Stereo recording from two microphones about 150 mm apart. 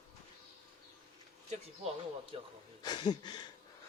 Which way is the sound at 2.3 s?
40° right (ahead or behind).